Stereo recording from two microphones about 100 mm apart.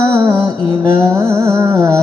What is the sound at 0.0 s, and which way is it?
Music, 30° right (ahead or behind).